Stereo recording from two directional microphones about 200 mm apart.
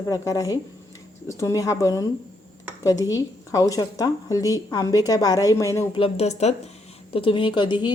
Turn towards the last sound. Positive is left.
turn(degrees=20)  # may be behind; listen again after turning